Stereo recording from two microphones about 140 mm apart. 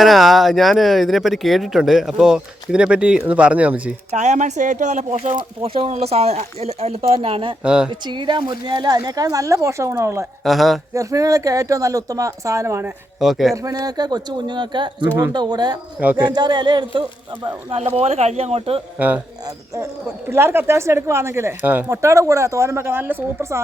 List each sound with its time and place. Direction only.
0.0 s speech: centre (ahead or behind)
4.1 s speech: 55° right (ahead or behind)
7.6 s speech: 5° right (ahead or behind)
7.9 s a man's voice: 35° right (ahead or behind)
10.4 s speech: centre (ahead or behind)
10.9 s speech: 25° right (ahead or behind)
13.1 s speech: centre (ahead or behind)
13.6 s a man's voice: 25° right (ahead or behind)
15.0 s speech: 15° right (ahead or behind)
15.3 s a man's voice: 30° right (ahead or behind)
17.7 s speech: 45° right (ahead or behind)
18.9 s speech: 10° right (ahead or behind)
19.5 s speech: 20° right (ahead or behind)